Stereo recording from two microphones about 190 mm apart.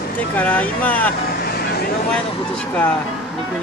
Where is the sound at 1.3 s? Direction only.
50° left (ahead or behind).